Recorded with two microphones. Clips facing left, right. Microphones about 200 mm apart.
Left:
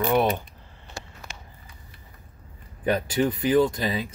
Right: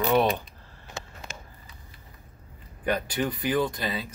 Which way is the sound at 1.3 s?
45° right (ahead or behind).